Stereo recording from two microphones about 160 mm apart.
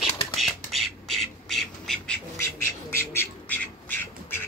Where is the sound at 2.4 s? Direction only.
15° left (ahead or behind).